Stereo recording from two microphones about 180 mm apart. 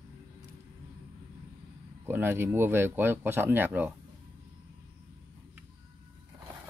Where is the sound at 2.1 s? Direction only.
15° right (ahead or behind).